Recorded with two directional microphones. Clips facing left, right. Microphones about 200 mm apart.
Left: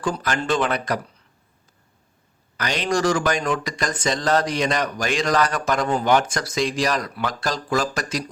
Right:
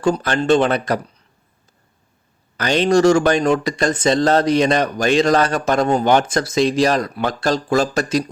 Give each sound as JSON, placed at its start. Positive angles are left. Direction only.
{"t": 0.0, "sound": "speech", "side_deg": -25}
{"t": 2.6, "sound": "speech", "side_deg": -30}